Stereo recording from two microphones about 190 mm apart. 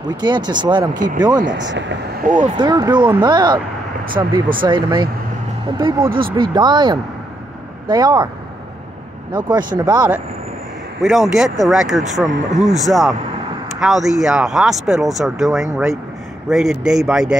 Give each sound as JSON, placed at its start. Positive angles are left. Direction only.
{"t": 0.2, "sound": "speech", "side_deg": -25}
{"t": 0.9, "sound": "speech", "side_deg": -45}
{"t": 1.5, "sound": "speech", "side_deg": -70}
{"t": 2.5, "sound": "speech", "side_deg": -25}
{"t": 9.3, "sound": "speech", "side_deg": -25}
{"t": 11.0, "sound": "speech", "side_deg": 0}
{"t": 12.3, "sound": "speech", "side_deg": -40}
{"t": 12.7, "sound": "speech", "side_deg": 0}